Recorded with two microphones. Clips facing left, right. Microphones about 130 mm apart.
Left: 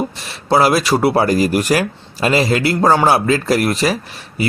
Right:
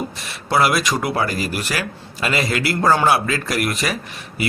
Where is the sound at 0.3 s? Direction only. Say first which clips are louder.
Left 4 dB; 35° left (ahead or behind).